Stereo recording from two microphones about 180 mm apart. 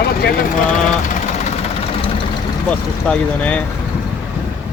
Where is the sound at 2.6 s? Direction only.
5° left (ahead or behind).